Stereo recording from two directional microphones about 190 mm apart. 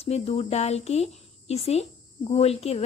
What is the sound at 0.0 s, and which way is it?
Speech, 30° left (ahead or behind).